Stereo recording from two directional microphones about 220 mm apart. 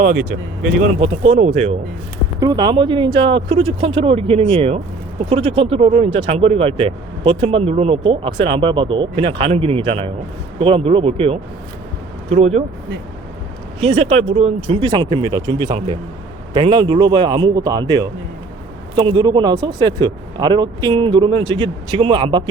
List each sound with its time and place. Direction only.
0.8 s speech: 25° right (ahead or behind)
2.4 s speech: 15° right (ahead or behind)
13.7 s speech: 30° right (ahead or behind)